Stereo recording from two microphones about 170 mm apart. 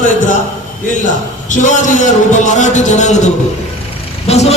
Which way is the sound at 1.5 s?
45° left (ahead or behind).